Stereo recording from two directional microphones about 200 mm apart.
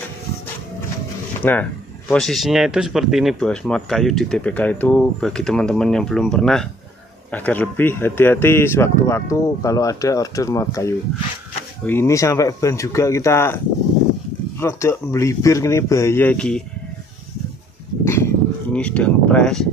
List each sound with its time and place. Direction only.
1.4 s speech: 10° left (ahead or behind)
14.6 s speech: 15° left (ahead or behind)
18.0 s a sound: 15° left (ahead or behind)